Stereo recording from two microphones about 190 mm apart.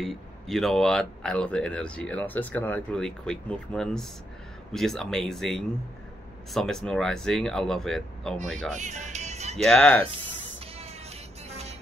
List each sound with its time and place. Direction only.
0.0 s speech: centre (ahead or behind)
8.7 s music: 40° right (ahead or behind)
9.7 s speech: 5° left (ahead or behind)
10.8 s music: 35° right (ahead or behind)